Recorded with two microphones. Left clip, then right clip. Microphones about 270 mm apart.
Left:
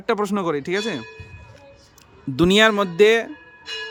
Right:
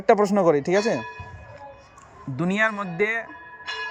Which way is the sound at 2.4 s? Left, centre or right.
Left.